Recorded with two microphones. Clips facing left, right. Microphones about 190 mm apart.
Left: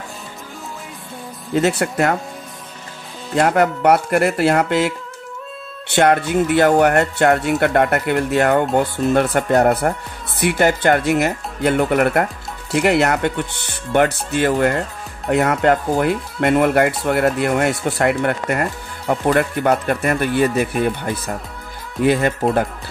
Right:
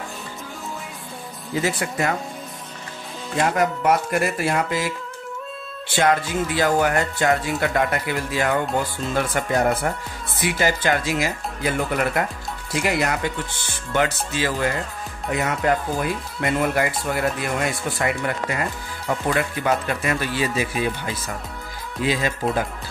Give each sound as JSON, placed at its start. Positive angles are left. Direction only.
{"t": 1.5, "sound": "speech", "side_deg": 65}
{"t": 3.3, "sound": "speech", "side_deg": 60}